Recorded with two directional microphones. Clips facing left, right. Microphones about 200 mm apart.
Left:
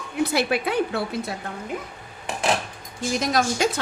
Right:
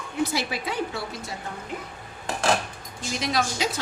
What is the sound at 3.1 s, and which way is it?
Speech, 45° left (ahead or behind).